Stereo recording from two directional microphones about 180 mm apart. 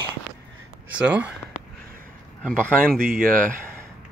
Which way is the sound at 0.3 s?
10° right (ahead or behind).